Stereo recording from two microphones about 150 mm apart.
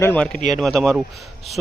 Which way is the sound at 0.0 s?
10° left (ahead or behind).